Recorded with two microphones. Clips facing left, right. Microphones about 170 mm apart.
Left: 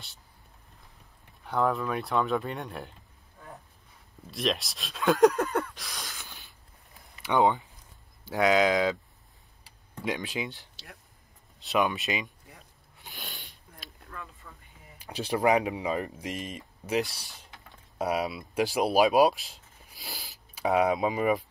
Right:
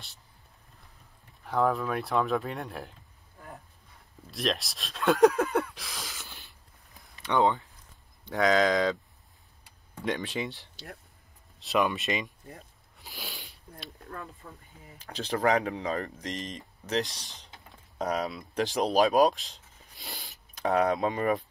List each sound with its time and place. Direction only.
1.4 s speech: centre (ahead or behind)
4.3 s speech: centre (ahead or behind)
7.2 s speech: 20° left (ahead or behind)
8.3 s speech: 5° left (ahead or behind)
10.0 s speech: centre (ahead or behind)
13.0 s a sound: centre (ahead or behind)
14.0 s a sound: 40° right (ahead or behind)
15.0 s speech: 15° left (ahead or behind)
17.0 s speech: 15° right (ahead or behind)
17.9 s speech: 10° left (ahead or behind)